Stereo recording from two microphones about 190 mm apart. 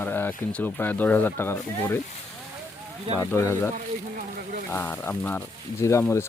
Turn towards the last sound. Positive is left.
turn(degrees=15)  # may be behind; listen again after turning